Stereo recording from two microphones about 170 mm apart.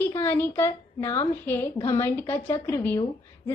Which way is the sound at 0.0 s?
15° left (ahead or behind).